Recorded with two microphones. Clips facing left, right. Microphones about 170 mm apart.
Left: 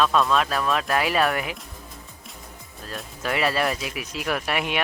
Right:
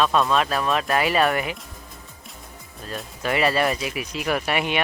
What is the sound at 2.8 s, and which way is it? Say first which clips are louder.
Speech: right 2 dB; centre (ahead or behind).